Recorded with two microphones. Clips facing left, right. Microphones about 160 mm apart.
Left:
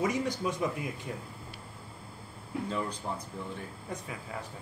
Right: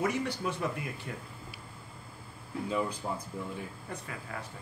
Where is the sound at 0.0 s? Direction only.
10° left (ahead or behind).